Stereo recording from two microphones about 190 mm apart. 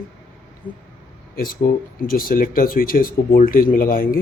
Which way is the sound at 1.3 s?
50° left (ahead or behind).